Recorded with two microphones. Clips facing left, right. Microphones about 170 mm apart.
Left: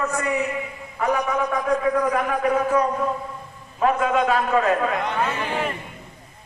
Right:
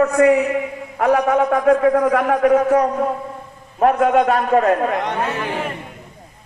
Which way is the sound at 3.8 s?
55° right (ahead or behind).